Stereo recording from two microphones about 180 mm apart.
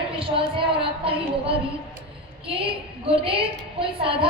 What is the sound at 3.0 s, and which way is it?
A woman's voice, 30° right (ahead or behind).